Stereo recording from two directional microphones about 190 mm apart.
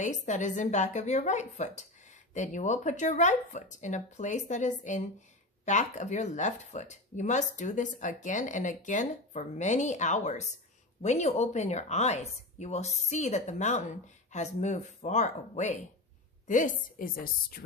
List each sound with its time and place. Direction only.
0.0 s a woman's voice: 40° left (ahead or behind)